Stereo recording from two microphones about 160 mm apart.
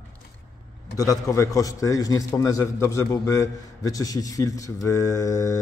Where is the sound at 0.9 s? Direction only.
20° left (ahead or behind).